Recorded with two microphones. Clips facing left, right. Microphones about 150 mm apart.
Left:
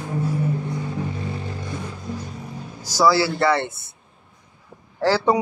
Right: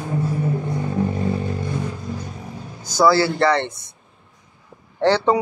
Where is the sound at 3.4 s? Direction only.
5° left (ahead or behind).